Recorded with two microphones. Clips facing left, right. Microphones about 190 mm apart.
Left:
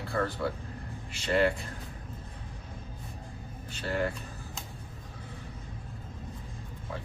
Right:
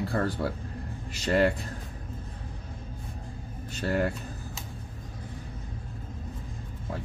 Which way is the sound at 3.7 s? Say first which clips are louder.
Right 4 dB; 45° right (ahead or behind).